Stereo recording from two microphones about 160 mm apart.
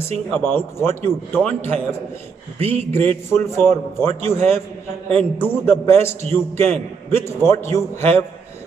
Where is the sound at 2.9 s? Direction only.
15° left (ahead or behind).